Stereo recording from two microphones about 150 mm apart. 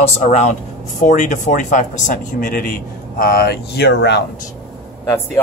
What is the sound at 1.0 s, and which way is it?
Speech, 55° left (ahead or behind).